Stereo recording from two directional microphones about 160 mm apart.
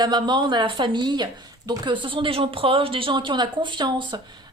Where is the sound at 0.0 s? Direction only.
25° right (ahead or behind).